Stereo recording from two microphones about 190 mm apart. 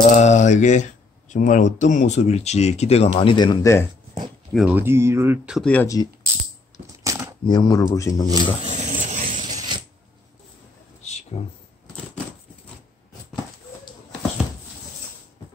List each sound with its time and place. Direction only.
0.1 s speech: 40° left (ahead or behind); by 3.8 s 20° left (ahead or behind)
4.6 s speech: 10° right (ahead or behind)
5.7 s speech: 10° left (ahead or behind)
7.0 s a sound: 15° right (ahead or behind)
7.4 s speech: 20° left (ahead or behind)
8.3 s speech: 20° right (ahead or behind)
8.7 s a sound: 40° right (ahead or behind)
9.4 s mechanisms: 20° right (ahead or behind)
11.3 s speech: 30° left (ahead or behind)